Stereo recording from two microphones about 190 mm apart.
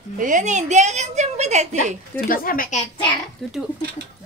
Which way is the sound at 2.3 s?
50° left (ahead or behind).